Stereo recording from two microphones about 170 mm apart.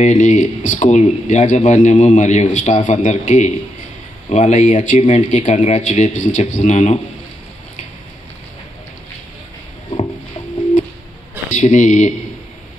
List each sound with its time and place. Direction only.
0.0 s speech: 45° left (ahead or behind)
11.5 s speech: 45° left (ahead or behind)